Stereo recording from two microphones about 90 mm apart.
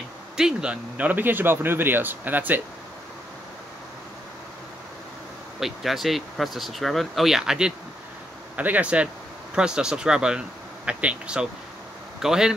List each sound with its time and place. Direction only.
0.4 s speech: 10° right (ahead or behind)
5.6 s speech: centre (ahead or behind)
8.5 s speech: 15° right (ahead or behind)